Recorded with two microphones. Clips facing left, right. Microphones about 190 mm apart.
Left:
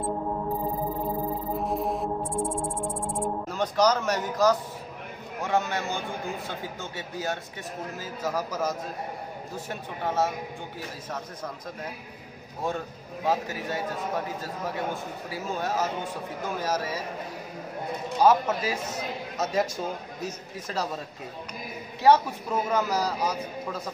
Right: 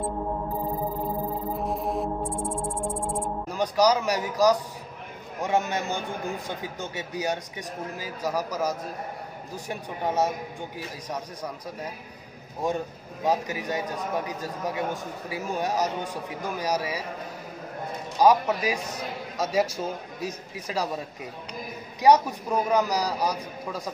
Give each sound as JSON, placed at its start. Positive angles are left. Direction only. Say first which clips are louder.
{"t": 1.7, "sound": "music", "louder": "even", "side_deg": 0}
{"t": 3.4, "sound": "a man's voice", "louder": "right 2 dB", "side_deg": -10}
{"t": 18.2, "sound": "a man's voice", "louder": "right 1 dB", "side_deg": -15}
{"t": 20.2, "sound": "a man's voice", "louder": "right 2 dB", "side_deg": -10}
{"t": 22.0, "sound": "a man's voice", "louder": "right 1 dB", "side_deg": -15}